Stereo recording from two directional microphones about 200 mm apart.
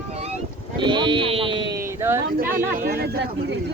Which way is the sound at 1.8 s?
10° right (ahead or behind).